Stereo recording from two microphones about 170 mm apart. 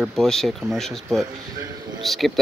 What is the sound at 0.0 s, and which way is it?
Speech, centre (ahead or behind).